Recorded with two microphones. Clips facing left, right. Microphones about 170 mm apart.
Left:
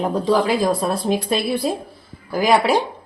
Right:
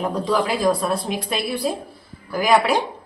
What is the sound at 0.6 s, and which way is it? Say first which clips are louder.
Speech: left 1 dB; 30° left (ahead or behind).